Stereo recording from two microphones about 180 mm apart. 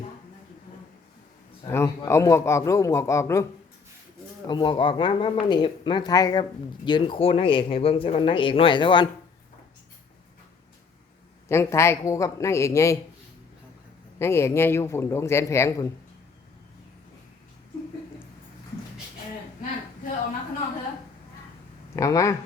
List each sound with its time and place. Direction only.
1.6 s a sound: 15° left (ahead or behind)
2.0 s speech: 15° left (ahead or behind)
4.4 s speech: 25° left (ahead or behind)
11.4 s speech: 15° left (ahead or behind)
14.2 s speech: 15° left (ahead or behind)
21.9 s speech: 15° left (ahead or behind)